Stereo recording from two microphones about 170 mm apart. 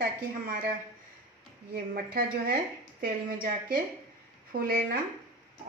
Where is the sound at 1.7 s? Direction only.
60° right (ahead or behind).